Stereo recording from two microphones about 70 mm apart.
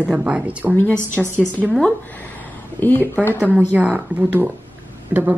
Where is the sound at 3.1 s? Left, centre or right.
Left.